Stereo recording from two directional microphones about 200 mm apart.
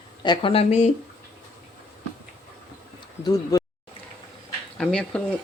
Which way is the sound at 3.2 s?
20° left (ahead or behind).